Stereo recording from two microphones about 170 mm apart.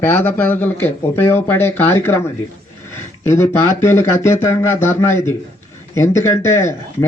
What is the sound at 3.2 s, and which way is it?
Speech, 15° left (ahead or behind).